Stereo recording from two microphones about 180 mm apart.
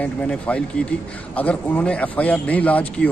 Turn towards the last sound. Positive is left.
turn(degrees=10)  # may be behind; listen again after turning